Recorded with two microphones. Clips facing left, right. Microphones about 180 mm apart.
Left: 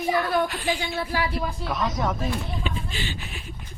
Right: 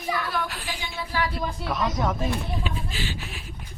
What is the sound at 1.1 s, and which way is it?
Speech, 10° left (ahead or behind).